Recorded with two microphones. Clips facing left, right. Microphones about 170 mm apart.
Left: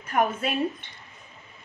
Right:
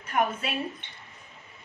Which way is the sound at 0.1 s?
45° left (ahead or behind).